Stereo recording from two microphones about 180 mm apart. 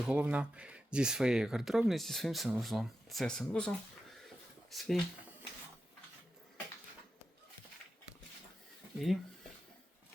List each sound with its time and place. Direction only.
0.0 s speech: 5° right (ahead or behind)